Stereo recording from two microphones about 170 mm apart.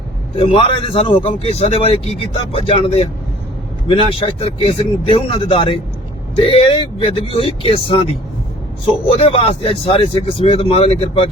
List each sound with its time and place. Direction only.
0.3 s a man's voice: 35° left (ahead or behind)